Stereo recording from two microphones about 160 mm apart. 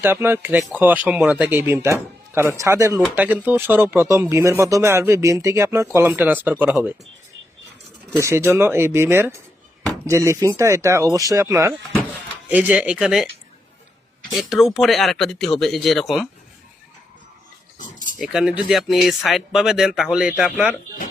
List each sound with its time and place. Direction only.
0.0 s speech: 15° right (ahead or behind)
8.2 s speech: 15° right (ahead or behind)
14.3 s speech: centre (ahead or behind)
17.7 s cutlery: 55° left (ahead or behind)
18.2 s speech: 5° right (ahead or behind)